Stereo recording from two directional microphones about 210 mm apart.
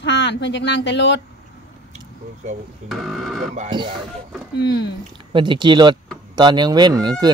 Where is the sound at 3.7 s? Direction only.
20° right (ahead or behind).